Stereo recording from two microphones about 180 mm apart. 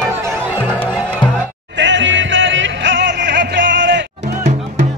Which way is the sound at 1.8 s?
90° right.